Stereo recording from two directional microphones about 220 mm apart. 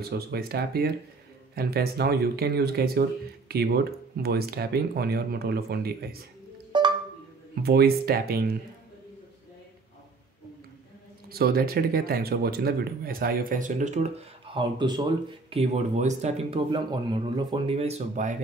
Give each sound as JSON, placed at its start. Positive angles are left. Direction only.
{"t": 0.0, "sound": "speech", "side_deg": -45}
{"t": 6.7, "sound": "cowbell", "side_deg": -20}
{"t": 7.6, "sound": "speech", "side_deg": -45}
{"t": 11.2, "sound": "speech", "side_deg": -45}